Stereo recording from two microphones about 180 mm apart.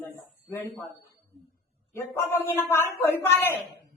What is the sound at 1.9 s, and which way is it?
A man's voice, 15° left (ahead or behind).